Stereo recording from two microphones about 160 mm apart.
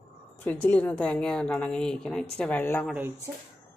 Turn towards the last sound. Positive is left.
turn(degrees=-5)  # may be behind; listen again after turning